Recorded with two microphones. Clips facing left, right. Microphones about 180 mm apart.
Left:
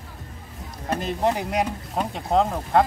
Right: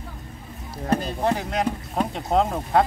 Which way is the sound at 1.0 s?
15° left (ahead or behind).